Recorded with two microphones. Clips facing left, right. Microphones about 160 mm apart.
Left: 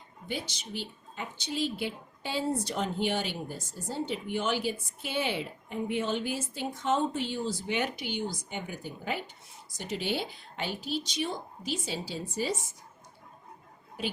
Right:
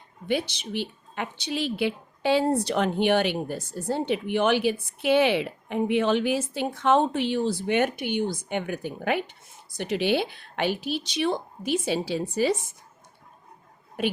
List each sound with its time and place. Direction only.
0.3 s speech: 65° right (ahead or behind)
14.0 s a woman's voice: 60° right (ahead or behind)